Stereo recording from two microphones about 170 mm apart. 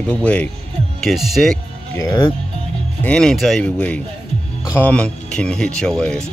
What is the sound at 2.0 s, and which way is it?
Speech, 15° left (ahead or behind).